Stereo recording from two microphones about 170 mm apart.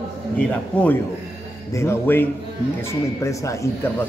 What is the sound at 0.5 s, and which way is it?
Speech, 10° left (ahead or behind).